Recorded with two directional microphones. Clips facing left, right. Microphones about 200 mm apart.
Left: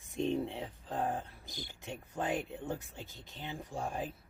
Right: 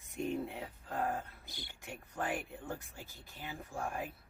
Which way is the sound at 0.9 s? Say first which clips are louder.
Left 1 dB; 15° left (ahead or behind).